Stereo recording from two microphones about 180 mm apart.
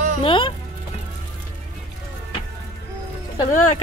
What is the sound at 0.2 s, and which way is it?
Speech, 30° left (ahead or behind).